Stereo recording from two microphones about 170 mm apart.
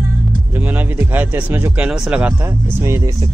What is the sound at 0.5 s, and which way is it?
Speech, 10° right (ahead or behind).